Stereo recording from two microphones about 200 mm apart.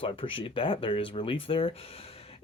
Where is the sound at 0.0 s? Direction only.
25° left (ahead or behind).